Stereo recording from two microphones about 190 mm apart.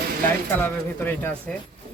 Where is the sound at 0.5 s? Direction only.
10° left (ahead or behind).